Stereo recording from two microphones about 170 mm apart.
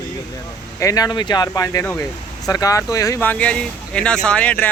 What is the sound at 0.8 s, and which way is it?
Speech, 20° left (ahead or behind).